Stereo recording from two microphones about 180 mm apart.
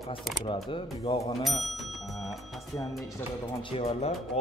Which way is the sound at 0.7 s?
30° left (ahead or behind).